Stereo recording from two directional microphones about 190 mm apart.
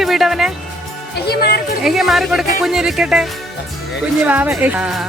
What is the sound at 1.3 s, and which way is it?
Speech, 55° left (ahead or behind).